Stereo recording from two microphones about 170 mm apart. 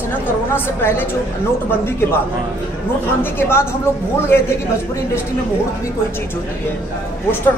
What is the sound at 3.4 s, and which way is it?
Speech, 15° left (ahead or behind).